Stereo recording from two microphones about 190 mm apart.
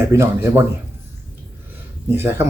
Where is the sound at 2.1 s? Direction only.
10° right (ahead or behind).